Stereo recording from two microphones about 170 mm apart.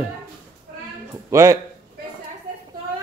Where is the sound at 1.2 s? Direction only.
15° right (ahead or behind).